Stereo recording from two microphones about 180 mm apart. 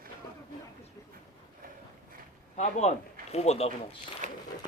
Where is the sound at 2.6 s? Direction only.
40° left (ahead or behind).